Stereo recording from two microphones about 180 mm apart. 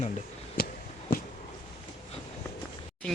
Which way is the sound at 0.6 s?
55° left (ahead or behind).